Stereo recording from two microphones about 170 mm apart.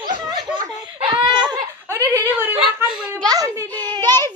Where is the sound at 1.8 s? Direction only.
15° right (ahead or behind).